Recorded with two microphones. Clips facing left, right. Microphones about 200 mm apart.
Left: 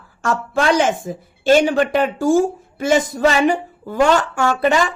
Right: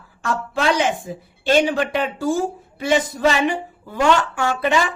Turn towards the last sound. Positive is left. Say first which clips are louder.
# left 3 dB
turn(degrees=45)  # may be behind; listen again after turning